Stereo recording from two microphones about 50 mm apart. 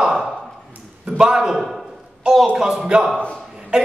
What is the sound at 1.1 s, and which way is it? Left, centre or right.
A man's voice, centre.